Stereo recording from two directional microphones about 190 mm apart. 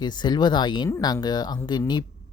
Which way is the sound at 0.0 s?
20° left (ahead or behind).